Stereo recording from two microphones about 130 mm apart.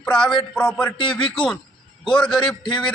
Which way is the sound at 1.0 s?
40° left (ahead or behind).